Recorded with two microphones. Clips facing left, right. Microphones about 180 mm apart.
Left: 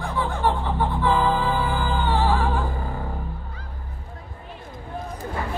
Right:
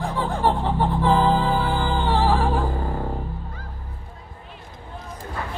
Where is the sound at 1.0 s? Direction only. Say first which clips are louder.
Right 2 dB; 35° right (ahead or behind).